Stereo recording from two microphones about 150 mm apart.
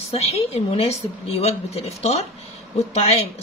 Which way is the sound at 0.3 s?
40° left (ahead or behind).